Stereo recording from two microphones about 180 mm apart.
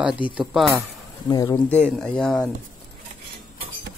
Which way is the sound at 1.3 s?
20° left (ahead or behind).